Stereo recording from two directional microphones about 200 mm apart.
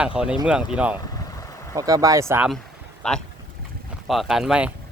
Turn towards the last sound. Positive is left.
turn(degrees=-5)  # may be behind; listen again after turning